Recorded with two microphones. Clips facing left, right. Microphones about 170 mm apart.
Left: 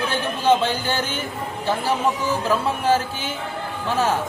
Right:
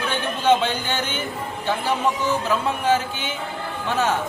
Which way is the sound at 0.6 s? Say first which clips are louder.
Left 1 dB; 35° left (ahead or behind).